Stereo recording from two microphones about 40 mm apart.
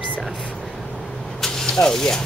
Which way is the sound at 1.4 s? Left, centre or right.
Centre.